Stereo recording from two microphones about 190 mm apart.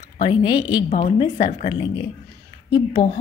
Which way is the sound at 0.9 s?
35° left (ahead or behind).